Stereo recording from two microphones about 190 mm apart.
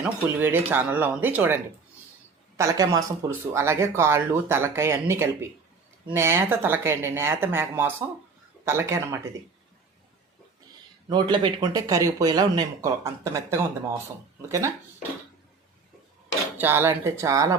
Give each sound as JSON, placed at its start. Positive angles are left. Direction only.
{"t": 0.0, "sound": "speech", "side_deg": -10}
{"t": 11.1, "sound": "speech", "side_deg": -25}
{"t": 16.6, "sound": "speech", "side_deg": -10}